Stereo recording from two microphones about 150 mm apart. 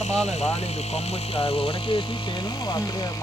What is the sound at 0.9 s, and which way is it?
Speech, 40° left (ahead or behind).